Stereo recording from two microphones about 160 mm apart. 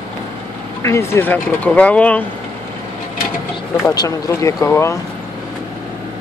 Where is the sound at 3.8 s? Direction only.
20° left (ahead or behind).